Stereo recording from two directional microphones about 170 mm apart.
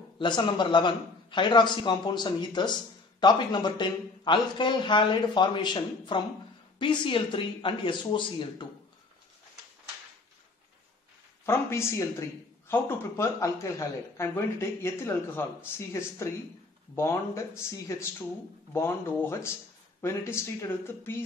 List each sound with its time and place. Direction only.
0.2 s a man's voice: 25° left (ahead or behind)
11.4 s speech: 15° left (ahead or behind)